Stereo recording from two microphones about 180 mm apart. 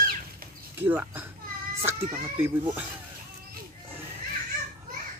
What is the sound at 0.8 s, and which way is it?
A child's voice, 10° right (ahead or behind).